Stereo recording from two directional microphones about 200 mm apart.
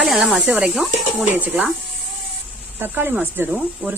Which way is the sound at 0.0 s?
5° right (ahead or behind).